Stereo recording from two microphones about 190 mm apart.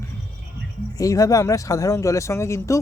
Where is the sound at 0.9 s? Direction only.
15° left (ahead or behind).